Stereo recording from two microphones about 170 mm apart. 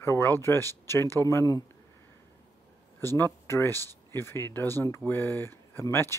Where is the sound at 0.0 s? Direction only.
15° left (ahead or behind).